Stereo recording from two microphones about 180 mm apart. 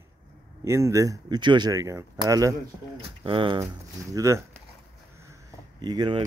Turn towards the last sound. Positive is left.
turn(degrees=-25)  # may be behind; listen again after turning